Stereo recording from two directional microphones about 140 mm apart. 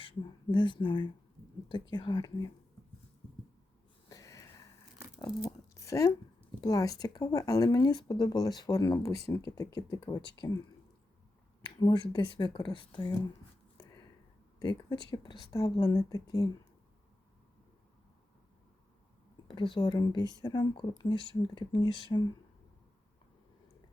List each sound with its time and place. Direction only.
0.0 s speech: 35° left (ahead or behind)
4.1 s a sound: 20° left (ahead or behind)
5.2 s speech: 25° left (ahead or behind)
11.6 s speech: 35° left (ahead or behind)
14.6 s speech: 30° left (ahead or behind)
19.5 s speech: 35° left (ahead or behind)